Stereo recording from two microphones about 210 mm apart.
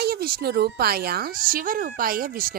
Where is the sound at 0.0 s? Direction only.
45° right (ahead or behind).